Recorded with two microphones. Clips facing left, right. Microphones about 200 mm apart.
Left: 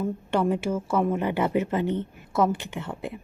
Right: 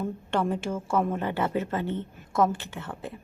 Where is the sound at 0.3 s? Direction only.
10° left (ahead or behind).